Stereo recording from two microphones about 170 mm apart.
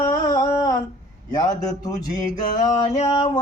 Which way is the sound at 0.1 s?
20° left (ahead or behind).